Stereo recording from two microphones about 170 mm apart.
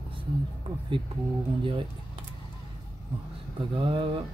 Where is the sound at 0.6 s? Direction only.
35° right (ahead or behind).